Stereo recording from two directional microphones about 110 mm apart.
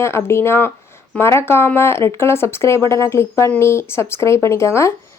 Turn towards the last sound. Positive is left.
turn(degrees=25)  # may be behind; listen again after turning